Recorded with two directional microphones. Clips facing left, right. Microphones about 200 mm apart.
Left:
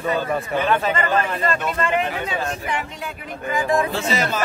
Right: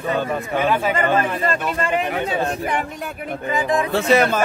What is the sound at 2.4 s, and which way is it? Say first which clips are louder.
Speech: right 4 dB; 55° right (ahead or behind).